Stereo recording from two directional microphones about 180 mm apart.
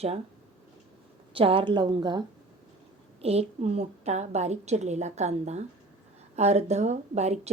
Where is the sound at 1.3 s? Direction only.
30° right (ahead or behind).